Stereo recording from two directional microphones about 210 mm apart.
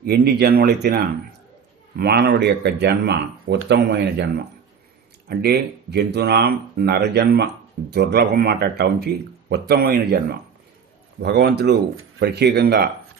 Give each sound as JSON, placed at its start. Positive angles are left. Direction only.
{"t": 0.0, "sound": "speech", "side_deg": -50}